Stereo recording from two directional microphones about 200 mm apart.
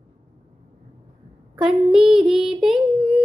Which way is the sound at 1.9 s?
5° right (ahead or behind).